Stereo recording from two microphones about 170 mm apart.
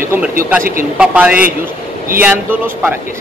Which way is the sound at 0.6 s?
55° right (ahead or behind).